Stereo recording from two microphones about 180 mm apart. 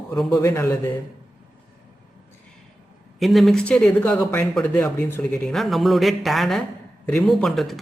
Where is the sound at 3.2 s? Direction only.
Centre (ahead or behind).